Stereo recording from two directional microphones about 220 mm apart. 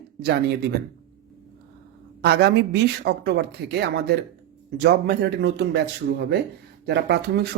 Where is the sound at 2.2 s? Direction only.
50° right (ahead or behind).